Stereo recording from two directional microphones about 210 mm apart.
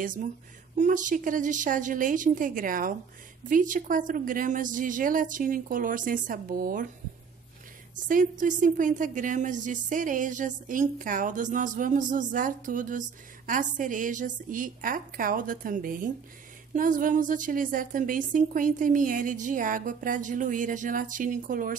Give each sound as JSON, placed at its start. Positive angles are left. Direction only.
{"t": 0.0, "sound": "speech", "side_deg": -40}
{"t": 7.9, "sound": "speech", "side_deg": -40}